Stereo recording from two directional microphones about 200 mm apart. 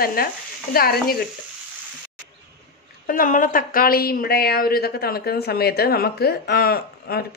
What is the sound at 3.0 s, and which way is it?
Speech, 40° left (ahead or behind).